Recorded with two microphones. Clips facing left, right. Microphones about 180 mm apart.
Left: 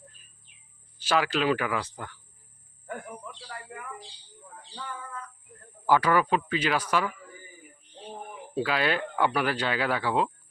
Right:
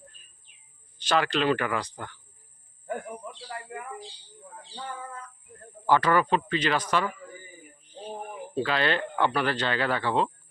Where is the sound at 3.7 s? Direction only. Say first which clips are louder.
Right 5 dB; 25° right (ahead or behind).